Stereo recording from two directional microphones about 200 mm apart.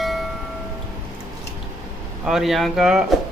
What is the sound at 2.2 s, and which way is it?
Speech, centre (ahead or behind).